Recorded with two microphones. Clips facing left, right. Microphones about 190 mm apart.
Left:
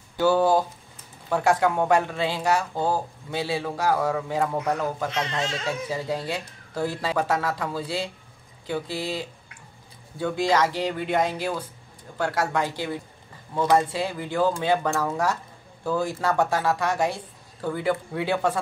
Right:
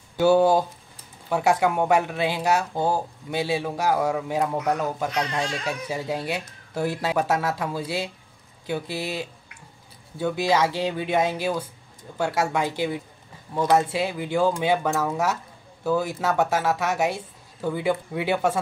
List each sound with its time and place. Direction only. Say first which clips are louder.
0.2 s speech: right 2 dB; 15° right (ahead or behind)